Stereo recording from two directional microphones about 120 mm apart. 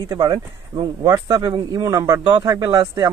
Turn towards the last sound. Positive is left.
turn(degrees=-30)  # may be behind; listen again after turning